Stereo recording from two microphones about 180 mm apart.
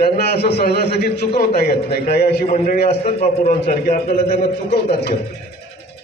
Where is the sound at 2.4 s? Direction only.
40° left (ahead or behind).